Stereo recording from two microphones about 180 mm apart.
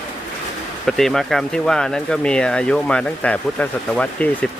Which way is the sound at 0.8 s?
Centre (ahead or behind).